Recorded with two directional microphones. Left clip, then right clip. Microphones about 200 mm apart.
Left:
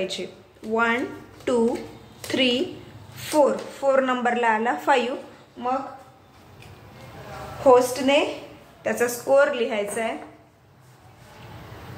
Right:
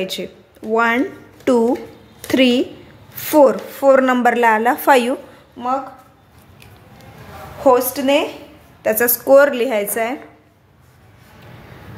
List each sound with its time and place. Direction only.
0.0 s a woman's voice: 50° right (ahead or behind)
7.6 s a woman's voice: 45° right (ahead or behind)